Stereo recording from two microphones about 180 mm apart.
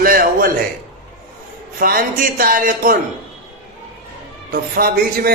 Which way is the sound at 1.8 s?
55° right (ahead or behind).